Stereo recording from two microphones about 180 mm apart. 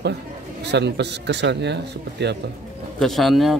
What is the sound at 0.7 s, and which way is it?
Speech, 70° right (ahead or behind).